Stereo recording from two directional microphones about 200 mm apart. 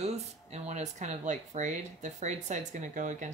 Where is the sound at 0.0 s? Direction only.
35° right (ahead or behind).